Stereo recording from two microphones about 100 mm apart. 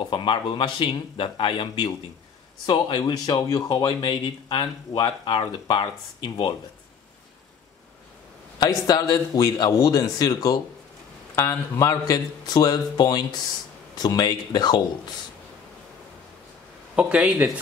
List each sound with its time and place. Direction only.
0.0 s speech: 55° left (ahead or behind)
8.5 s a man's voice: 40° left (ahead or behind)
11.3 s a man's voice: 30° left (ahead or behind); by 14.8 s 45° left (ahead or behind)
16.9 s speech: 10° right (ahead or behind)